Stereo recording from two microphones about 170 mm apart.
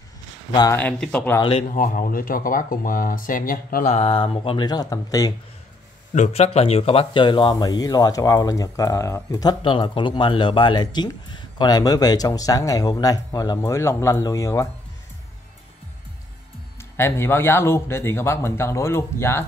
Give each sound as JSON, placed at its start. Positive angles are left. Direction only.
{"t": 0.5, "sound": "speech", "side_deg": 25}
{"t": 0.7, "sound": "a man's voice", "side_deg": 5}
{"t": 1.4, "sound": "speech", "side_deg": 35}
{"t": 1.7, "sound": "speech", "side_deg": 55}
{"t": 6.1, "sound": "speech", "side_deg": 40}
{"t": 16.9, "sound": "a man's voice", "side_deg": 15}